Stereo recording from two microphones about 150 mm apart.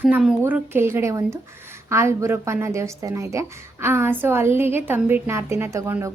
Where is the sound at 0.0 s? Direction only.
5° right (ahead or behind).